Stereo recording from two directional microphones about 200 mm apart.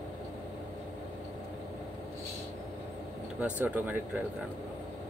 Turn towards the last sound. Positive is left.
turn(degrees=-10)  # may be behind; listen again after turning